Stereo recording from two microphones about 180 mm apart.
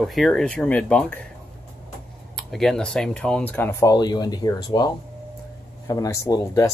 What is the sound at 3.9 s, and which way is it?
Speech, 20° left (ahead or behind).